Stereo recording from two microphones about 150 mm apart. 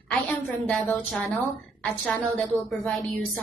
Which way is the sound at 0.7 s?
5° left (ahead or behind).